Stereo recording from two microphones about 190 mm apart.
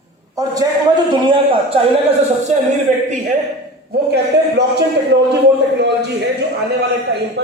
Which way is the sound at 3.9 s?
60° right (ahead or behind).